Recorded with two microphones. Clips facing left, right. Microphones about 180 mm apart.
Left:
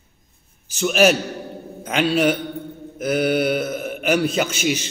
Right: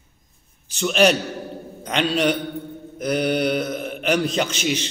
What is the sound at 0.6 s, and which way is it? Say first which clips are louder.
A man's voice: left 1 dB; 5° left (ahead or behind).